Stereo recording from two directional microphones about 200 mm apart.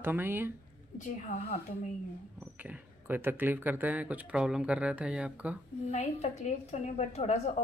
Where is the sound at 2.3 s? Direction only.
10° right (ahead or behind).